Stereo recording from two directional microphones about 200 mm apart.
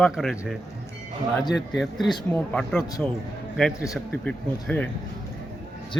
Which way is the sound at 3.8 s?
15° left (ahead or behind).